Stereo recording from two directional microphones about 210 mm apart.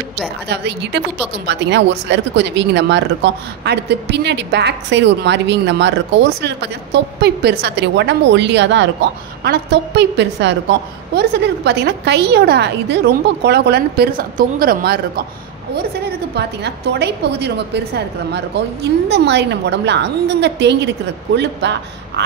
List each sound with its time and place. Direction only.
0.5 s a woman's voice: 55° right (ahead or behind)
16.3 s a woman's voice: 50° right (ahead or behind)